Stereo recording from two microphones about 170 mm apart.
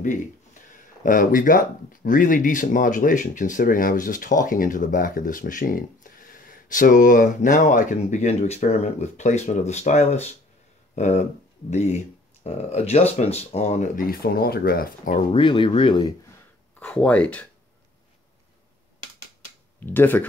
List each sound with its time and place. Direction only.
1.0 s speech: 50° left (ahead or behind)
15.3 s speech: 30° left (ahead or behind)
16.8 s speech: 10° left (ahead or behind)
19.9 s speech: 10° left (ahead or behind)